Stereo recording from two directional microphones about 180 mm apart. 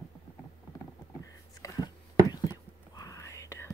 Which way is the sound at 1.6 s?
20° left (ahead or behind).